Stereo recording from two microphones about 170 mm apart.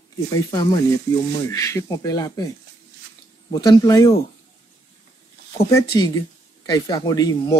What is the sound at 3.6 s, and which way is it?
Speech, 20° left (ahead or behind).